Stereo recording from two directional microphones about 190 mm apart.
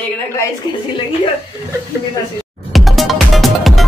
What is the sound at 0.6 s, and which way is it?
Speech, 20° left (ahead or behind).